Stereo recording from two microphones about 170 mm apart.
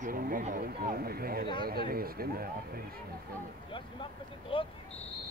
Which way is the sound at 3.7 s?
30° left (ahead or behind).